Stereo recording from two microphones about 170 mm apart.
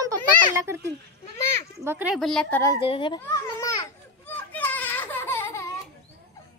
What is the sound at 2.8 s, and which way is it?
Speech, 30° left (ahead or behind).